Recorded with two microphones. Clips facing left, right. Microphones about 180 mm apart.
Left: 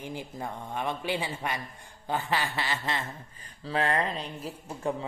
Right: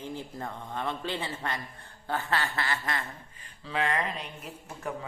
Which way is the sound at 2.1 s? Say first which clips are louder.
Left 1 dB; 15° left (ahead or behind).